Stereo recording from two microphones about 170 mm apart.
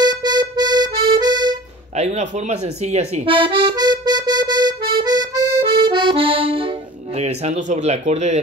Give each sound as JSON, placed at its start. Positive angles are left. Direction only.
{"t": 0.0, "sound": "music", "side_deg": -25}
{"t": 2.0, "sound": "accordion", "side_deg": -40}
{"t": 7.2, "sound": "speech", "side_deg": -40}